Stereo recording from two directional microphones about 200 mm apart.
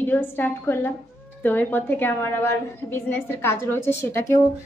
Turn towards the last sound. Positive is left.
turn(degrees=15)  # may be behind; listen again after turning